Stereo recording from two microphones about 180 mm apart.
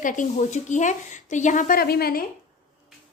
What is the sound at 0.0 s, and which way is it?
A woman's voice, 45° left (ahead or behind).